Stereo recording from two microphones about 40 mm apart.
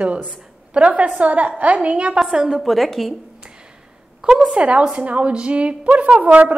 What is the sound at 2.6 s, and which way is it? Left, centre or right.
Speech, centre.